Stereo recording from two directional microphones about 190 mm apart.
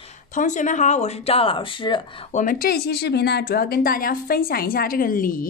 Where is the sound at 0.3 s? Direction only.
40° left (ahead or behind); by 2.0 s 25° left (ahead or behind).